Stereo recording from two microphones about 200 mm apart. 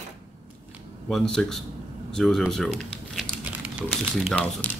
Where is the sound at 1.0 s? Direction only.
5° left (ahead or behind).